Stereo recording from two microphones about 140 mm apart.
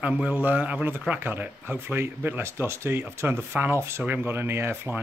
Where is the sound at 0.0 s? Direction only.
10° right (ahead or behind).